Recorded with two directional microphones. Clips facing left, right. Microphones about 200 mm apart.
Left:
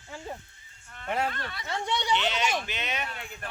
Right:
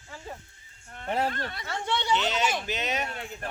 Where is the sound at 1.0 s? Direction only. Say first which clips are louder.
Right 2 dB; 35° right (ahead or behind).